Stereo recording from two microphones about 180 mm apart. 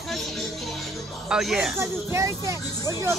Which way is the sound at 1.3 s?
5° right (ahead or behind).